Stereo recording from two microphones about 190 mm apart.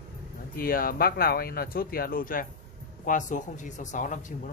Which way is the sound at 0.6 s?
50° left (ahead or behind).